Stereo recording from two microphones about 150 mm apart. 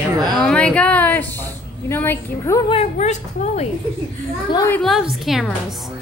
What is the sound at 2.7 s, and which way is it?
Speech, 50° left (ahead or behind).